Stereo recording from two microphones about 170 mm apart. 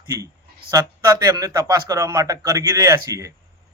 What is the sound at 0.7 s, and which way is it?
A man's voice, 20° right (ahead or behind).